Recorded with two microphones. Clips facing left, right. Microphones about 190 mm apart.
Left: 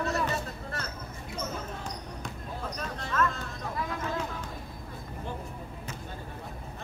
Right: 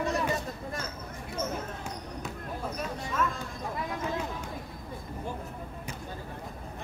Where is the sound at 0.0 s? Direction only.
15° right (ahead or behind).